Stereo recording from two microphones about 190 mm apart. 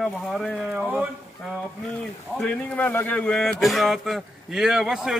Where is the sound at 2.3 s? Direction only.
10° left (ahead or behind).